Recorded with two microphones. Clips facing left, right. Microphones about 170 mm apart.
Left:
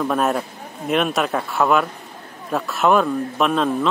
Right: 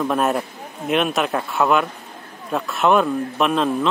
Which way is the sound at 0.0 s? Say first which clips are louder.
Even; centre (ahead or behind).